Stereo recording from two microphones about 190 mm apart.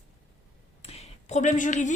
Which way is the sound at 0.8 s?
35° left (ahead or behind).